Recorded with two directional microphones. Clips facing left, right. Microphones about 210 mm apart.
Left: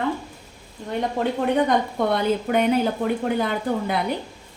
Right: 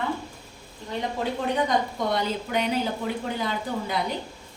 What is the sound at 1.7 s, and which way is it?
Speech, 55° left (ahead or behind).